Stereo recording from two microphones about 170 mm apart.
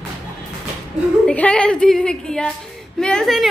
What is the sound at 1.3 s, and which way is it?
A woman's voice, 5° left (ahead or behind).